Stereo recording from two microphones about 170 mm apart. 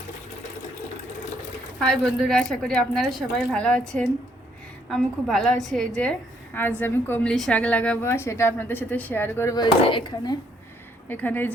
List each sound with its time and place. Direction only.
1.8 s a woman's voice: 5° left (ahead or behind); by 10.3 s 25° left (ahead or behind)
11.1 s a woman's voice: 10° left (ahead or behind)